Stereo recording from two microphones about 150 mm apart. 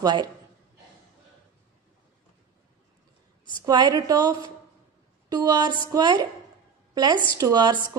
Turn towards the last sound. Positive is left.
turn(degrees=-30)  # may be behind; listen again after turning